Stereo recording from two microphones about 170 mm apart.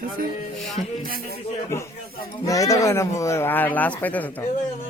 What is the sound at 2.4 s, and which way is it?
Speech, 20° left (ahead or behind).